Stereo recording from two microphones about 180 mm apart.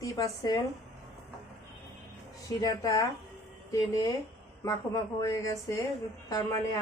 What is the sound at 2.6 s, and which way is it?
Speech, 20° left (ahead or behind).